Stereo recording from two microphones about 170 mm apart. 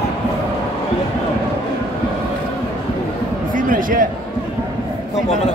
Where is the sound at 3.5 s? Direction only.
55° right (ahead or behind).